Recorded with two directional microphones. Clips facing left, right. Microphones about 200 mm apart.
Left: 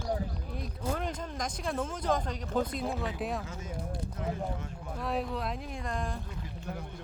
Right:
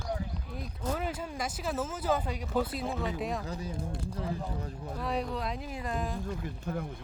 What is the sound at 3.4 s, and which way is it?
Speech, 35° right (ahead or behind).